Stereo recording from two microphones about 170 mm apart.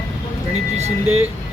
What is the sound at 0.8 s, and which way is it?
Speech, 40° right (ahead or behind).